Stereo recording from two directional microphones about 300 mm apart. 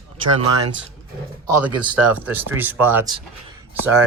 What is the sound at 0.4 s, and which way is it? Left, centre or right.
Speech, right.